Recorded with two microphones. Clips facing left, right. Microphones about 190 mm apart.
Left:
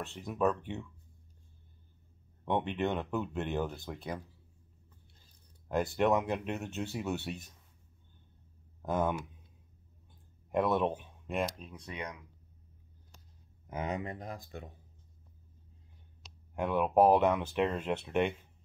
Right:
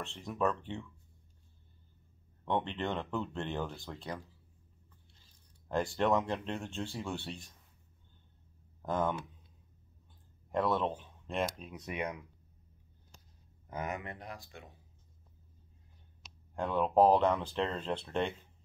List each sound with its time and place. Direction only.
0.0 s speech: 5° left (ahead or behind)
2.4 s speech: 10° left (ahead or behind)
5.9 s speech: 10° left (ahead or behind)
8.8 s speech: 10° left (ahead or behind)
10.5 s speech: 15° left (ahead or behind)
11.7 s speech: 20° right (ahead or behind)
13.7 s speech: 20° left (ahead or behind)
13.9 s speech: 40° left (ahead or behind)
16.5 s speech: 10° left (ahead or behind)